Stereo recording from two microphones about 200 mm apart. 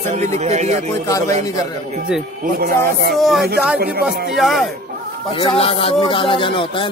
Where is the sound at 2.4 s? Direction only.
45° right (ahead or behind).